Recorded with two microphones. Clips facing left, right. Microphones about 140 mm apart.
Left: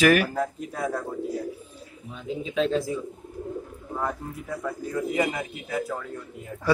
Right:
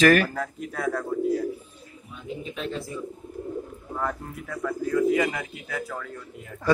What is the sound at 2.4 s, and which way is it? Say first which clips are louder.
Speech: left 10 dB; 90° left.